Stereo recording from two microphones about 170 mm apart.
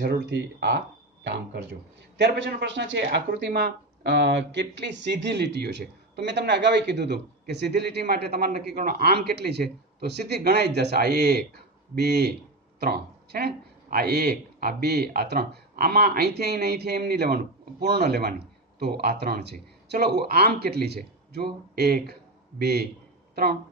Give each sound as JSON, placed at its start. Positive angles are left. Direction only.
{"t": 0.0, "sound": "speech", "side_deg": -75}
{"t": 2.1, "sound": "speech", "side_deg": -85}